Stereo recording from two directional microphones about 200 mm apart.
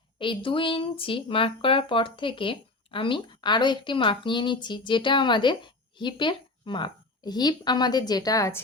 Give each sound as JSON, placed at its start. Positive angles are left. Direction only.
{"t": 0.2, "sound": "speech", "side_deg": 25}